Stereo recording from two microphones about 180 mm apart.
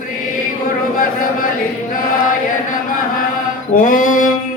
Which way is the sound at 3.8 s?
50° left (ahead or behind).